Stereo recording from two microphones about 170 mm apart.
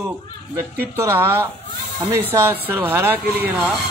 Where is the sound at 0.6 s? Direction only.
15° right (ahead or behind).